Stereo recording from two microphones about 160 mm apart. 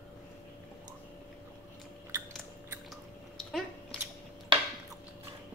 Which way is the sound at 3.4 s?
5° left (ahead or behind).